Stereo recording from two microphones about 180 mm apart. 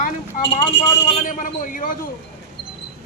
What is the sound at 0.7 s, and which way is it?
Speech, 80° left.